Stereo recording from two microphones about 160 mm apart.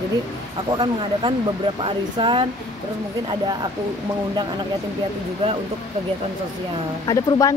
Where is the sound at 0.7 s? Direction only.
30° right (ahead or behind).